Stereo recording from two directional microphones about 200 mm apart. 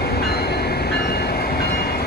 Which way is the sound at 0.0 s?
50° left (ahead or behind).